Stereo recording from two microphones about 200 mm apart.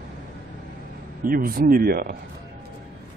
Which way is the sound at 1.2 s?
45° right (ahead or behind).